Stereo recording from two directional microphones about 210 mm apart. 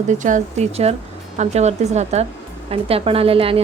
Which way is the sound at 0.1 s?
35° right (ahead or behind).